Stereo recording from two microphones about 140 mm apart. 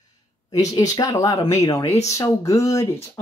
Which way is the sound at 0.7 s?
25° left (ahead or behind).